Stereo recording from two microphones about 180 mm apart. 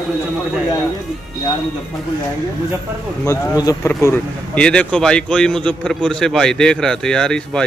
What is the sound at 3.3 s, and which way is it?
A man's voice, 20° left (ahead or behind).